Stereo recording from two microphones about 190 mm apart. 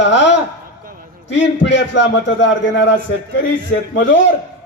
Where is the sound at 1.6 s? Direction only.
70° left (ahead or behind).